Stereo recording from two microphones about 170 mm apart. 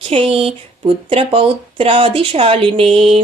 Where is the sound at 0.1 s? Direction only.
35° right (ahead or behind).